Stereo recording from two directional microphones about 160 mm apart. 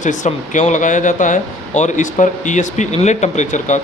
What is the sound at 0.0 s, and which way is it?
Speech, 50° left (ahead or behind).